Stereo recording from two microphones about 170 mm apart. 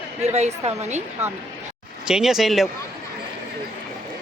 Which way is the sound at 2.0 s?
5° right (ahead or behind).